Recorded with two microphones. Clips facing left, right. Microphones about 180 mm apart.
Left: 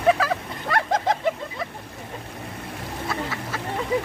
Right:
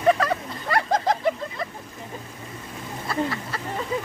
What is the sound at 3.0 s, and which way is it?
Duck, centre (ahead or behind).